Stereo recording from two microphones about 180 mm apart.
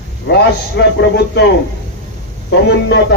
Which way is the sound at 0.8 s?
70° left (ahead or behind).